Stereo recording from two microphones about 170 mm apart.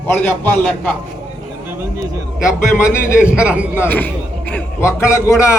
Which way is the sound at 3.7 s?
10° left (ahead or behind).